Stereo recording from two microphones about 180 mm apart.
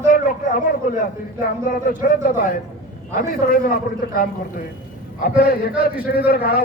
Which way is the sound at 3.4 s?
55° left (ahead or behind).